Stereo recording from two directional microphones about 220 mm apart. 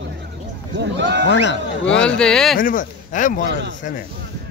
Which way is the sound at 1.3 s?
55° left (ahead or behind).